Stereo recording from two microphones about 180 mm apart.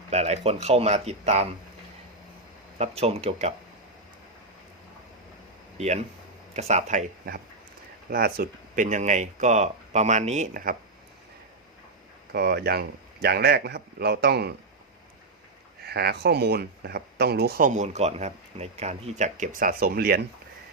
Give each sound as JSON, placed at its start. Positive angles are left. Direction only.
{"t": 0.1, "sound": "speech", "side_deg": -35}
{"t": 2.7, "sound": "speech", "side_deg": -35}
{"t": 5.7, "sound": "speech", "side_deg": -35}
{"t": 8.1, "sound": "speech", "side_deg": -60}
{"t": 12.3, "sound": "speech", "side_deg": -60}
{"t": 15.9, "sound": "speech", "side_deg": -60}